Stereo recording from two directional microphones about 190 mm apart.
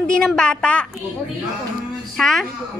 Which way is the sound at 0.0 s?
5° left (ahead or behind).